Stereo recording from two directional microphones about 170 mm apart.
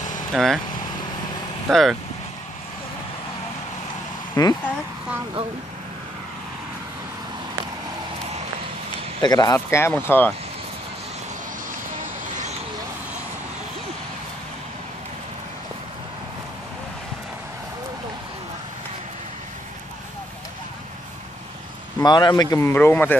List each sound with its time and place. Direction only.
0.3 s speech: centre (ahead or behind)
1.7 s speech: centre (ahead or behind)
4.4 s speech: 20° left (ahead or behind)
9.2 s a man's voice: 25° left (ahead or behind)
22.0 s a man's voice: 25° left (ahead or behind)